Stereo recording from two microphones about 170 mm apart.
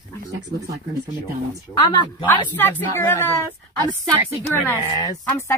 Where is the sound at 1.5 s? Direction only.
25° left (ahead or behind).